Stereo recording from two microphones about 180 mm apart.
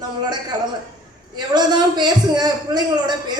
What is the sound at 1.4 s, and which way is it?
A man's voice, 25° right (ahead or behind).